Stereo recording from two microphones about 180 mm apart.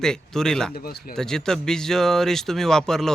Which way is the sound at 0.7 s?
55° left (ahead or behind).